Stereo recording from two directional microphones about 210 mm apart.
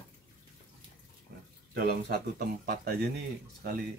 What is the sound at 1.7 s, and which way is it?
Speech, 45° right (ahead or behind).